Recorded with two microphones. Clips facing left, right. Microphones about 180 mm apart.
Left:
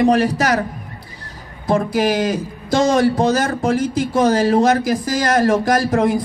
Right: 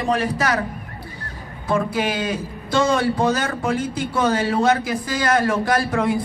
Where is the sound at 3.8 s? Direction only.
85° left.